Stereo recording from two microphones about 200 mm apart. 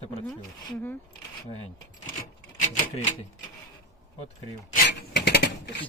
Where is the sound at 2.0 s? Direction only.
40° left (ahead or behind).